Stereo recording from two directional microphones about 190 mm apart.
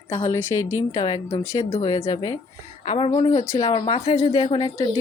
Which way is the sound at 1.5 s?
30° left (ahead or behind).